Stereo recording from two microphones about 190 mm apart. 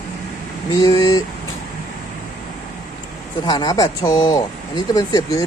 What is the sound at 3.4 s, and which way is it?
Speech, 20° left (ahead or behind).